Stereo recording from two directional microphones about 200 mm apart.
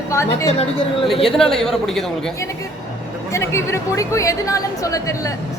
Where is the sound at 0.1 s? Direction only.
15° left (ahead or behind).